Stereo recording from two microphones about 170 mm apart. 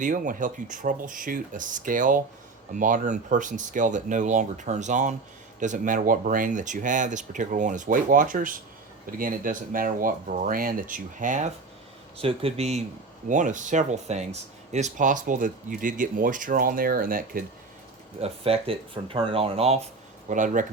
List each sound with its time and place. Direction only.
0.0 s speech: 50° right (ahead or behind)
12.1 s speech: 35° right (ahead or behind)
13.2 s speech: 50° right (ahead or behind)
18.2 s speech: 35° right (ahead or behind)
20.3 s speech: 50° right (ahead or behind)